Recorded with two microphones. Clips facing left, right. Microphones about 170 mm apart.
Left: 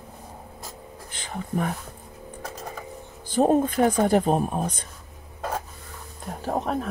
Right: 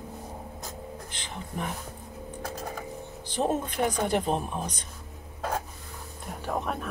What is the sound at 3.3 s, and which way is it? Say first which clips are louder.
Speech: left 8 dB; 50° left (ahead or behind).